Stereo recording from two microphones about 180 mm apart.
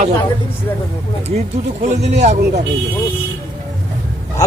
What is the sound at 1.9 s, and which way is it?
Speech, 40° right (ahead or behind).